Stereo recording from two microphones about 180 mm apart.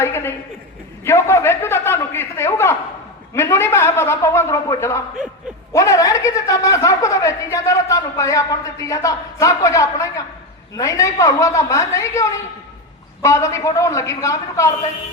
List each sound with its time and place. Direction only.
0.0 s a woman's voice: 15° left (ahead or behind)